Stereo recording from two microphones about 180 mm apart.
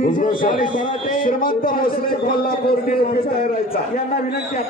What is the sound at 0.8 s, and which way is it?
A man's voice, 50° left (ahead or behind).